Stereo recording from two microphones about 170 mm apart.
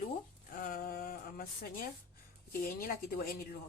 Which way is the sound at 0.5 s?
55° left (ahead or behind).